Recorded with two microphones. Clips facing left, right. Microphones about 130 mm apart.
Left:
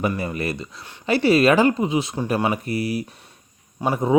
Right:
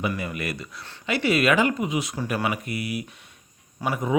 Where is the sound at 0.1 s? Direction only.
30° left (ahead or behind).